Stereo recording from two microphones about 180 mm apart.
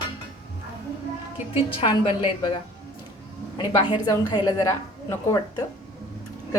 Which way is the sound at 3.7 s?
25° left (ahead or behind).